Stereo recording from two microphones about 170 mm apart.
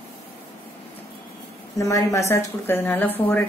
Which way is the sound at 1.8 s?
20° left (ahead or behind).